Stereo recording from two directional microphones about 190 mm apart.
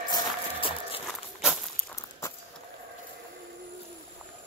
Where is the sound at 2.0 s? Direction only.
15° left (ahead or behind).